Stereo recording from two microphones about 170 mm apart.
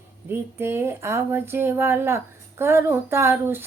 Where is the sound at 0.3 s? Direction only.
15° right (ahead or behind).